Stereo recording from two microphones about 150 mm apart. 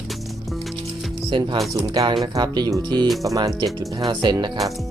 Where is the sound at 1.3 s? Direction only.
30° right (ahead or behind).